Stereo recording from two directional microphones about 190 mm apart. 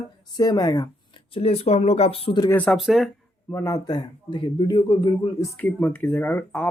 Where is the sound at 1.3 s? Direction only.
30° left (ahead or behind).